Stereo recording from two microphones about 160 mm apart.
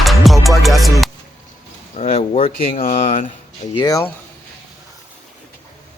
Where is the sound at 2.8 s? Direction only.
55° left (ahead or behind).